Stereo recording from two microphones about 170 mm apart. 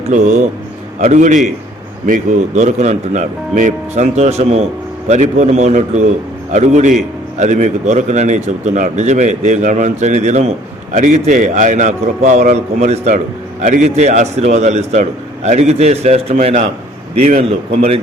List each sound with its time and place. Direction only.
0.1 s a man's voice: 45° right (ahead or behind)
17.7 s a man's voice: 35° right (ahead or behind)